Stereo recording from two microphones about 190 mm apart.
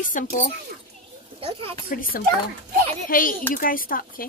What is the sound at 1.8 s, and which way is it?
Speech, 50° left (ahead or behind).